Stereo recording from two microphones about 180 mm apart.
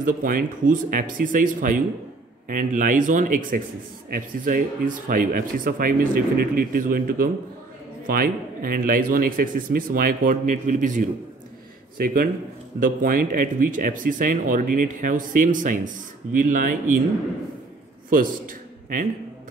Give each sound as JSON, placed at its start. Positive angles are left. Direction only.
{"t": 0.0, "sound": "speech", "side_deg": -50}
{"t": 12.8, "sound": "speech", "side_deg": -50}
{"t": 18.1, "sound": "a man's voice", "side_deg": -50}